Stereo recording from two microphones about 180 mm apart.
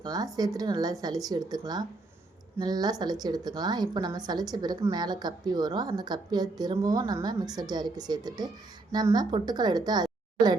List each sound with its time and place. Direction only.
0.0 s a woman's voice: 20° right (ahead or behind)